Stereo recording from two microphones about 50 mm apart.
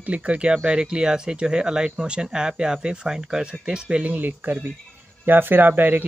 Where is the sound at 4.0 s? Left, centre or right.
Right.